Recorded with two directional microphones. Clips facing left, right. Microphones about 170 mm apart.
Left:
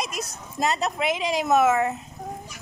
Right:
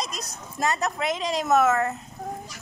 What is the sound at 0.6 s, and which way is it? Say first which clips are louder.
Speech: left 1 dB; 15° left (ahead or behind).